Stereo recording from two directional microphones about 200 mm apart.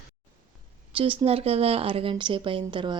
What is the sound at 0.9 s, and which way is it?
Speech, 25° right (ahead or behind).